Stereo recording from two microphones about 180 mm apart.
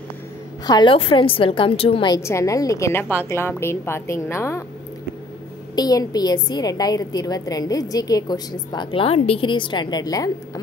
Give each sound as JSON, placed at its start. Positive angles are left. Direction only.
{"t": 0.7, "sound": "a woman's voice", "side_deg": 25}
{"t": 2.1, "sound": "a woman's voice", "side_deg": 15}
{"t": 5.8, "sound": "a woman's voice", "side_deg": 20}